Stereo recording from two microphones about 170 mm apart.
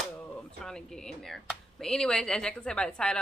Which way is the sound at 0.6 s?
Centre (ahead or behind).